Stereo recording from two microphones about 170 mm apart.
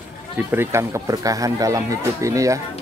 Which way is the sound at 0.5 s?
15° right (ahead or behind).